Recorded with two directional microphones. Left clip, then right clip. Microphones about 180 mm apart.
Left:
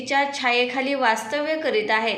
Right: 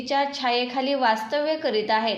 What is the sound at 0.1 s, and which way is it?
A woman's voice, 35° right (ahead or behind).